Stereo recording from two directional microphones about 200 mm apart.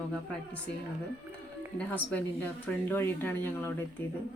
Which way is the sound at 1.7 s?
10° left (ahead or behind).